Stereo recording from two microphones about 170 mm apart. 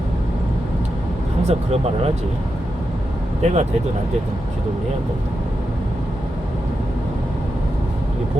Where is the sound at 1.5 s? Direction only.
35° right (ahead or behind).